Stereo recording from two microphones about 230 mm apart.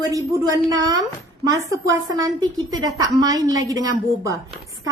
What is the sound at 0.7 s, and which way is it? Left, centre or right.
A woman's voice, centre.